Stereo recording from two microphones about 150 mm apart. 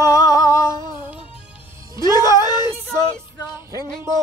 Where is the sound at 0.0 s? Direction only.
20° left (ahead or behind).